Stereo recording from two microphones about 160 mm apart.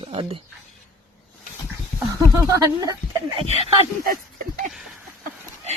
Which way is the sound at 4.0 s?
65° right (ahead or behind).